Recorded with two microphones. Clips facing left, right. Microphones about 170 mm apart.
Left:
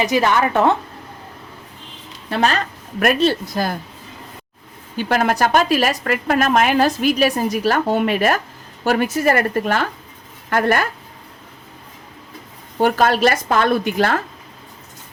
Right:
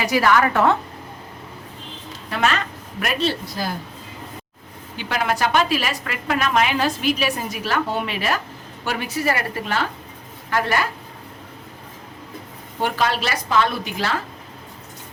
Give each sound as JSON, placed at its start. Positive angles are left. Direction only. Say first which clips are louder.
{"t": 0.0, "sound": "a woman's voice", "louder": "left 1 dB", "side_deg": 20}
{"t": 2.3, "sound": "a woman's voice", "louder": "left 3 dB", "side_deg": 35}
{"t": 3.0, "sound": "a woman's voice", "louder": "left 7 dB", "side_deg": 50}
{"t": 4.9, "sound": "a woman's voice", "louder": "left 5 dB", "side_deg": 45}
{"t": 12.8, "sound": "a woman's voice", "louder": "left 7 dB", "side_deg": 50}